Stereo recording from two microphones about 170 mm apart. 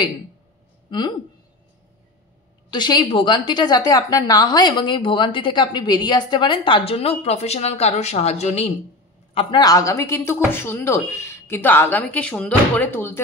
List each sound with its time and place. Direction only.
0.8 s speech: 25° left (ahead or behind)
2.7 s a woman's voice: 25° left (ahead or behind)